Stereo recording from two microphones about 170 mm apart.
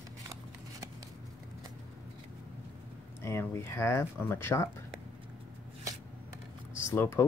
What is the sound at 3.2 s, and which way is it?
Speech, 15° left (ahead or behind).